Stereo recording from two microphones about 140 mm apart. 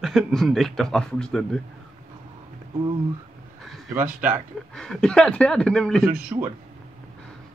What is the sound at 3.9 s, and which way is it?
Speech, 15° right (ahead or behind).